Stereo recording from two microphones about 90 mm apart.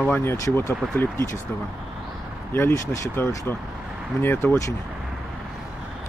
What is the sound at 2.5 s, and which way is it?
Speech, 30° left (ahead or behind).